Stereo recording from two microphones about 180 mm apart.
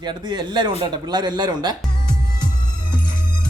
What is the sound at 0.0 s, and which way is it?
A man's voice, 25° right (ahead or behind).